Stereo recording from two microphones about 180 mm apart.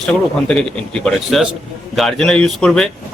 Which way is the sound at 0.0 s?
5° left (ahead or behind).